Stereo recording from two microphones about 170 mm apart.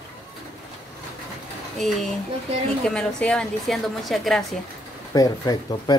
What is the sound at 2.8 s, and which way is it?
Speech, 5° left (ahead or behind).